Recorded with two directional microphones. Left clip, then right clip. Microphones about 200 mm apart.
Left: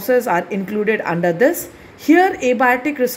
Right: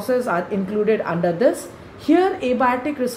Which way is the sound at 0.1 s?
55° left (ahead or behind).